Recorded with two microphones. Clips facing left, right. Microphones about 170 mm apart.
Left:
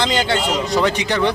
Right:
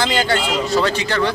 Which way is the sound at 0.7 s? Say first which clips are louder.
Even; 15° left (ahead or behind).